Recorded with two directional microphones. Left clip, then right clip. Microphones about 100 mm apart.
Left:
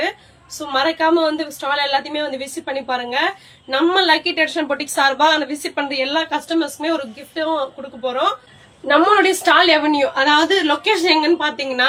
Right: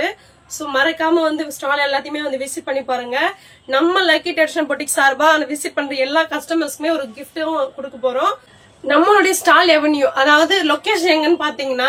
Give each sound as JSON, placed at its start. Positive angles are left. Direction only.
{"t": 0.7, "sound": "a woman's voice", "side_deg": -35}